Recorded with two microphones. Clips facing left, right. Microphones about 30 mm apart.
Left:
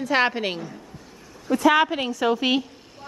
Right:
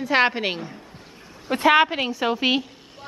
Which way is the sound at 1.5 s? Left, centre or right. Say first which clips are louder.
Right 1 dB; right.